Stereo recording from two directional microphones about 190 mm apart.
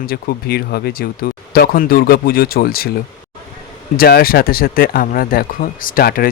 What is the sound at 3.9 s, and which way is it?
Speech, 55° left (ahead or behind).